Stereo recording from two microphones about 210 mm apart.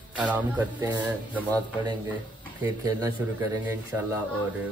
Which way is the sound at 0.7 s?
20° right (ahead or behind).